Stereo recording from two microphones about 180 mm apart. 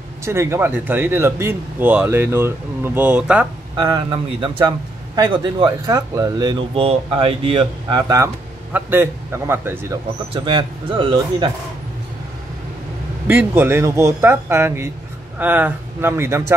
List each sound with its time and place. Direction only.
0.2 s speech: 15° right (ahead or behind)
3.7 s a man's voice: 25° right (ahead or behind)
8.7 s speech: 15° right (ahead or behind)
10.3 s a man's voice: 30° right (ahead or behind)
13.3 s speech: 10° right (ahead or behind)